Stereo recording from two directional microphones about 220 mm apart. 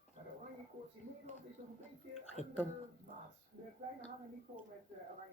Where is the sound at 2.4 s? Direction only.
30° left (ahead or behind).